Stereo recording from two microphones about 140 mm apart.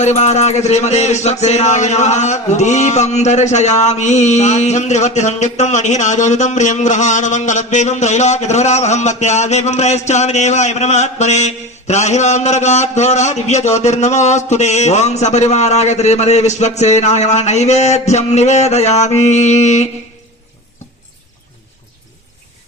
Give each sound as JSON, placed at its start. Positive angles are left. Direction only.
{"t": 0.0, "sound": "a man's voice", "side_deg": 55}